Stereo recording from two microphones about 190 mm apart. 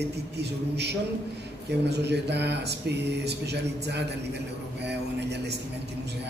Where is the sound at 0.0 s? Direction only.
60° right (ahead or behind).